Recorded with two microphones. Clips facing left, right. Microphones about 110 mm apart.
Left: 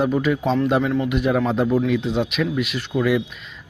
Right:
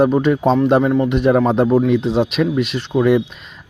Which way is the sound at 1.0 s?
35° right (ahead or behind).